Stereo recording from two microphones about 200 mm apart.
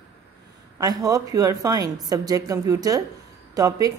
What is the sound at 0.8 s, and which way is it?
A woman's voice, 20° right (ahead or behind).